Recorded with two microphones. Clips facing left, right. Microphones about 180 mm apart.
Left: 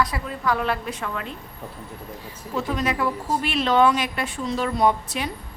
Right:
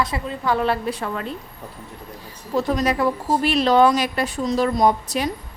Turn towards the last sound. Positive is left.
turn(degrees=-40)  # may be behind; listen again after turning